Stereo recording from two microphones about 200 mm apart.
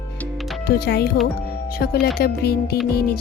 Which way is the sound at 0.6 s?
50° left (ahead or behind).